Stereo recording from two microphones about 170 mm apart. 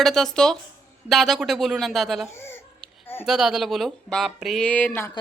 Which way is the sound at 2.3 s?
15° left (ahead or behind).